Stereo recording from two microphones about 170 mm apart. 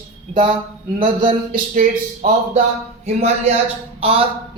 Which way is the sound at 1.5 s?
55° right (ahead or behind).